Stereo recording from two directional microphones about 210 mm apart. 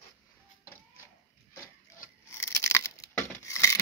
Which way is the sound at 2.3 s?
10° left (ahead or behind).